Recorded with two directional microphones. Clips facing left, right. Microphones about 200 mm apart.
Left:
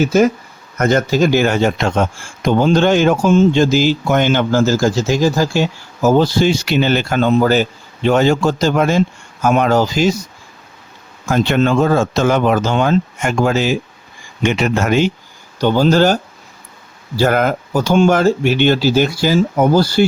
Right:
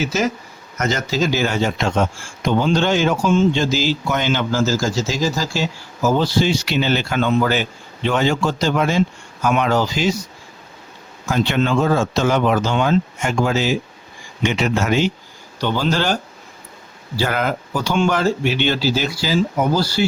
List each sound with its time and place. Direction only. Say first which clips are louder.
0.0 s speech: left 8 dB; 55° left (ahead or behind)
11.3 s speech: left 4 dB; 50° left (ahead or behind)
17.2 s speech: left 6 dB; 45° left (ahead or behind)